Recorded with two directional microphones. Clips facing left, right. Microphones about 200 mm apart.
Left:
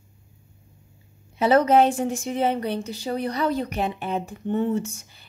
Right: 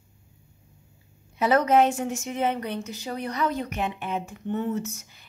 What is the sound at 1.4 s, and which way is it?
Speech, 30° left (ahead or behind).